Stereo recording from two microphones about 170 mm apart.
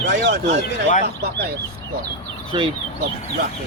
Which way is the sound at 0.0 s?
90° right.